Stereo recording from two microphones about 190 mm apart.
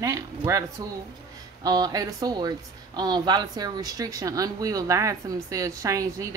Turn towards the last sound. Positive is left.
turn(degrees=-15)  # may be behind; listen again after turning